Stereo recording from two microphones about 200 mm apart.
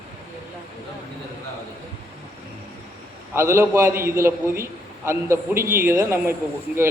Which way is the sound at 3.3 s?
15° right (ahead or behind).